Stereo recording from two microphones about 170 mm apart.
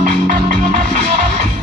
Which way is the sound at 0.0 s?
50° right (ahead or behind).